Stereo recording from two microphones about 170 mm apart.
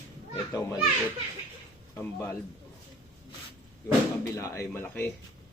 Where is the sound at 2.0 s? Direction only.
15° left (ahead or behind).